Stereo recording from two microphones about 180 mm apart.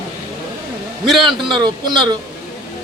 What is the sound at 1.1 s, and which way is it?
Speech, centre (ahead or behind).